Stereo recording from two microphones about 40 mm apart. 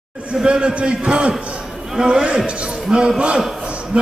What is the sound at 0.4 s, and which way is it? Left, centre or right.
A man's voice, right.